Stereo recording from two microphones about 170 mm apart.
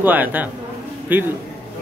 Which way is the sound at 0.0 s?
10° right (ahead or behind).